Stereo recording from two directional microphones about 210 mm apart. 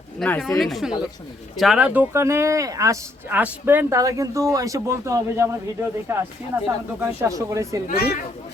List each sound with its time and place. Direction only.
0.2 s speech: 5° left (ahead or behind); by 7.8 s 15° right (ahead or behind)
7.9 s speech: 45° left (ahead or behind)